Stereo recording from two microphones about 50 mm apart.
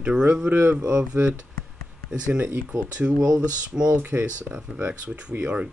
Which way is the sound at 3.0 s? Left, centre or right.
Right.